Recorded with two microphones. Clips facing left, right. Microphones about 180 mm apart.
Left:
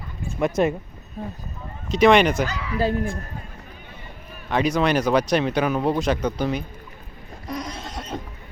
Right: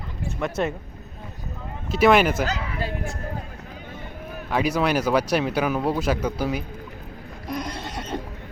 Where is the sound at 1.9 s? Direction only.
5° right (ahead or behind).